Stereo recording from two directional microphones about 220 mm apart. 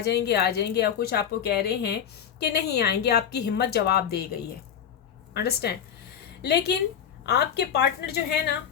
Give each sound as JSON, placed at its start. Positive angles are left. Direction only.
{"t": 0.0, "sound": "speech", "side_deg": 45}